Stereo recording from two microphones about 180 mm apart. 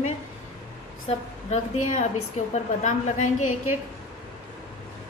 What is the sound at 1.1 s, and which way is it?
A woman's voice, 35° left (ahead or behind).